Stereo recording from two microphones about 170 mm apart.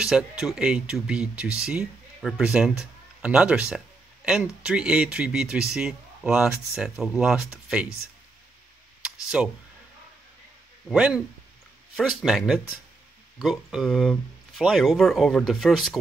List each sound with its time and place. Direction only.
0.0 s speech: 5° right (ahead or behind)
9.0 s a sound: 5° right (ahead or behind)
10.9 s speech: 5° right (ahead or behind)